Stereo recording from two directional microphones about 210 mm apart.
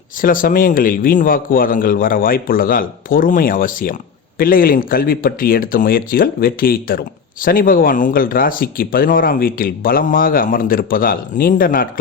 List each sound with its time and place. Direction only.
0.2 s a man's voice: 40° left (ahead or behind)